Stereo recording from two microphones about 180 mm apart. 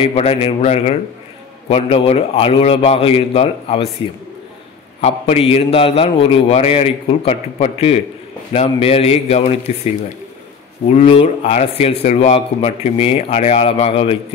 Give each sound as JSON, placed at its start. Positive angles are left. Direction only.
{"t": 0.0, "sound": "a man's voice", "side_deg": 30}
{"t": 5.0, "sound": "a man's voice", "side_deg": 35}